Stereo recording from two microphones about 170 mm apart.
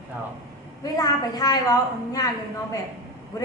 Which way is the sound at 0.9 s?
20° left (ahead or behind).